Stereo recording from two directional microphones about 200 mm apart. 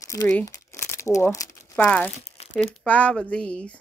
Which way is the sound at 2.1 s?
30° left (ahead or behind).